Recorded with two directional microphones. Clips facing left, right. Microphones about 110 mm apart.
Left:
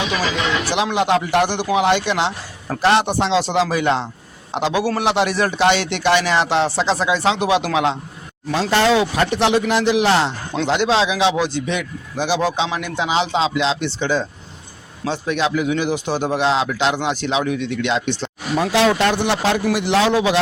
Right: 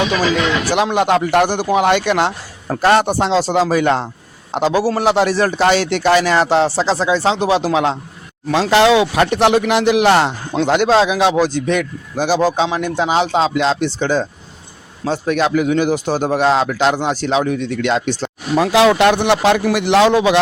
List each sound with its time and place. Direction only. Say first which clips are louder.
0.6 s a man's voice: right 4 dB; 45° right (ahead or behind)
8.7 s speech: right 4 dB; 90° right; by 18.6 s 40° right (ahead or behind)
18.6 s a man's voice: right 5 dB; 90° right; by 20.4 s 60° right (ahead or behind)